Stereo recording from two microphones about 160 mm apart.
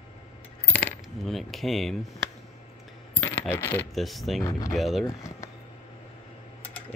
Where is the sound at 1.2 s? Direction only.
Centre (ahead or behind).